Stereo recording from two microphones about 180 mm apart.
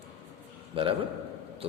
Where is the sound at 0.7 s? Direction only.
30° right (ahead or behind).